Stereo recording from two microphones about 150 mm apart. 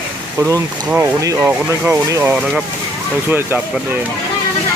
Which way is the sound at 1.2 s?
20° right (ahead or behind).